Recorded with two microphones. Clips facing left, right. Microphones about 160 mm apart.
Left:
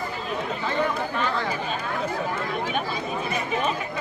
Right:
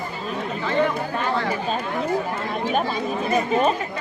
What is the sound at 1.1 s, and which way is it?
Speech, 30° right (ahead or behind).